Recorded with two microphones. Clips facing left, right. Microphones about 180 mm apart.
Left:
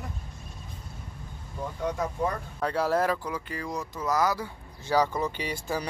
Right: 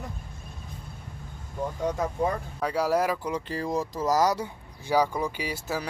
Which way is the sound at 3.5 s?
35° right (ahead or behind).